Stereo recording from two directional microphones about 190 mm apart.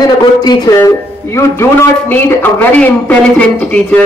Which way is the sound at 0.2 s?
20° left (ahead or behind).